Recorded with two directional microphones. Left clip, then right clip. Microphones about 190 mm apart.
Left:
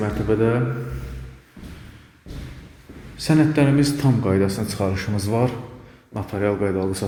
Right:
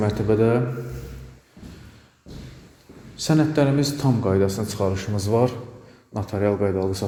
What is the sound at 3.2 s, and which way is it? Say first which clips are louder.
Speech: left 2 dB; 10° right (ahead or behind).